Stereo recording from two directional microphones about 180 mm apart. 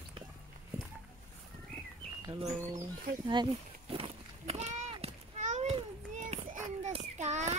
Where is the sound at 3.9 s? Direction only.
30° right (ahead or behind).